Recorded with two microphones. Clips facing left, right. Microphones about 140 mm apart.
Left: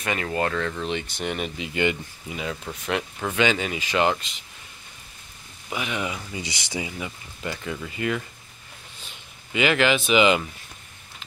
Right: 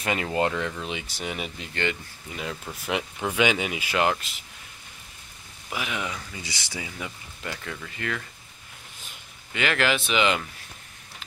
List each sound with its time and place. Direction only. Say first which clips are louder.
0.0 s speech: right 1 dB; 25° right (ahead or behind); by 1.7 s centre (ahead or behind)
1.7 s speech: left 5 dB; 15° left (ahead or behind)
2.3 s speech: left 3 dB; centre (ahead or behind)
5.7 s speech: left 3 dB; centre (ahead or behind)
6.1 s speech: left 4 dB; 20° left (ahead or behind)
7.0 s speech: left 3 dB; 5° left (ahead or behind)
9.5 s speech: left 4 dB; 5° left (ahead or behind)